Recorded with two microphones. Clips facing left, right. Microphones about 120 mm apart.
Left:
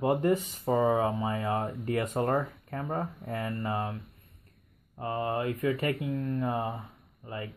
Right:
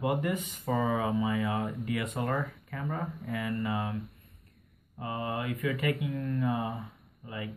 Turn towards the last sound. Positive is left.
turn(degrees=35)  # may be behind; listen again after turning